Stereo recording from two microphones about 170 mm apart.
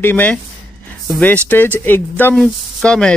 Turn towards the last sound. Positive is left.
turn(degrees=5)  # may be behind; listen again after turning